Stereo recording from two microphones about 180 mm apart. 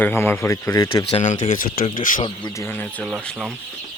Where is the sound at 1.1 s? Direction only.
40° left (ahead or behind).